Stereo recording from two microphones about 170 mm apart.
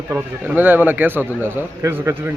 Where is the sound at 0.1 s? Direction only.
10° right (ahead or behind).